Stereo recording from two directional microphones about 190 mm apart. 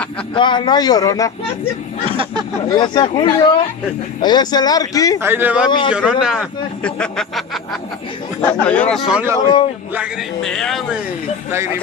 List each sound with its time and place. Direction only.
0.3 s a man's voice: 25° left (ahead or behind)
2.0 s speech: 30° right (ahead or behind)
2.7 s a man's voice: 25° left (ahead or behind)
5.2 s speech: 10° right (ahead or behind)
5.7 s a man's voice: 25° left (ahead or behind)
5.9 s speech: 5° right (ahead or behind)
9.1 s speech: 10° right (ahead or behind)
9.9 s speech: centre (ahead or behind)
11.5 s speech: 15° right (ahead or behind)